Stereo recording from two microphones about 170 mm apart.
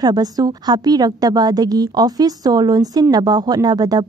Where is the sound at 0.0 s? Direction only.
25° right (ahead or behind).